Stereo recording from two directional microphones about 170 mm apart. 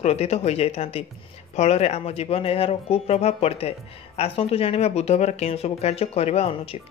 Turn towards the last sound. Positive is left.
turn(degrees=35)  # may be behind; listen again after turning